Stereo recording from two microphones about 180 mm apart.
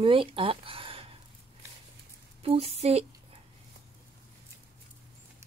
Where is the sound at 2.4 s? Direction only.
35° right (ahead or behind).